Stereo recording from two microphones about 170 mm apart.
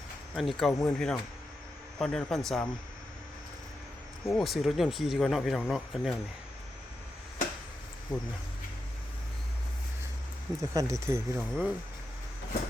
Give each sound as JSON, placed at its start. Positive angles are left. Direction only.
{"t": 0.3, "sound": "speech", "side_deg": 0}
{"t": 0.7, "sound": "speech", "side_deg": 20}
{"t": 0.9, "sound": "speech", "side_deg": 0}
{"t": 4.4, "sound": "speech", "side_deg": 0}
{"t": 8.1, "sound": "speech", "side_deg": 5}
{"t": 10.6, "sound": "speech", "side_deg": -20}
{"t": 11.3, "sound": "speech", "side_deg": 0}